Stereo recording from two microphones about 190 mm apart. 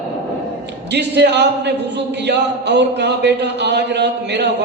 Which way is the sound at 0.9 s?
65° right (ahead or behind).